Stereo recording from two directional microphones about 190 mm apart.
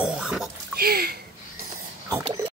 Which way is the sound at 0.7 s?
55° right (ahead or behind).